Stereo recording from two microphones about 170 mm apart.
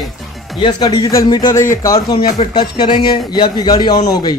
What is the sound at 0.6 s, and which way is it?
A man's voice, 25° left (ahead or behind).